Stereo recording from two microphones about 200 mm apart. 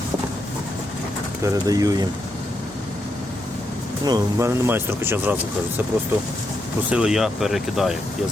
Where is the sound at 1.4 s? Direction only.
20° right (ahead or behind).